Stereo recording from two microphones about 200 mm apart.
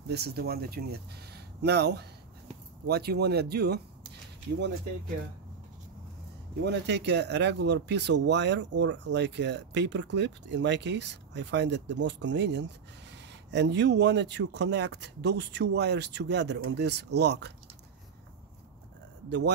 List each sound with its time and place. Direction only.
0.1 s speech: 55° right (ahead or behind)
6.6 s speech: 60° right (ahead or behind)
19.2 s speech: 55° right (ahead or behind)